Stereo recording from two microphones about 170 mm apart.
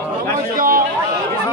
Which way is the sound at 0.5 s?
55° right (ahead or behind).